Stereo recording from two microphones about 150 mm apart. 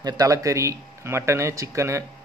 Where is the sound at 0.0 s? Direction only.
25° right (ahead or behind).